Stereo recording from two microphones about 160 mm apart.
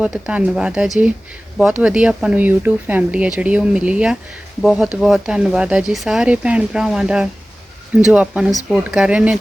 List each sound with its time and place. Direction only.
0.0 s speech: 5° right (ahead or behind)